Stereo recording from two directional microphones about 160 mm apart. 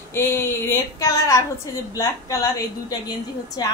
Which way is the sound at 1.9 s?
20° left (ahead or behind).